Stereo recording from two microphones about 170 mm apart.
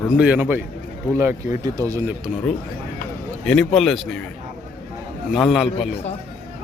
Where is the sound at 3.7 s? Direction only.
Centre (ahead or behind).